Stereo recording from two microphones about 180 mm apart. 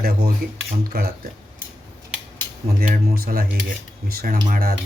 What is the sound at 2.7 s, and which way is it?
Speech, 55° right (ahead or behind).